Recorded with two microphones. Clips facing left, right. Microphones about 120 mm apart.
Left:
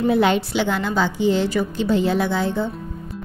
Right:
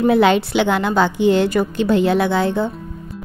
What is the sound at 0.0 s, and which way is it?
A woman's voice, 90° right.